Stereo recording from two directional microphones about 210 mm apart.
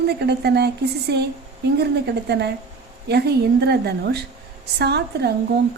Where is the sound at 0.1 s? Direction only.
50° right (ahead or behind).